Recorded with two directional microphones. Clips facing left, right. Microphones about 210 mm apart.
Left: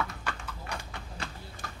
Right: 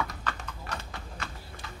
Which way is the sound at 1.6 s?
45° left (ahead or behind).